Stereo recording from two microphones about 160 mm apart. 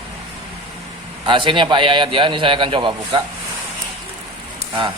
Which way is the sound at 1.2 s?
30° right (ahead or behind).